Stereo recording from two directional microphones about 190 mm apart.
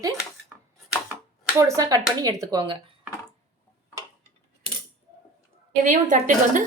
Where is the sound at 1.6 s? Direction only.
15° right (ahead or behind).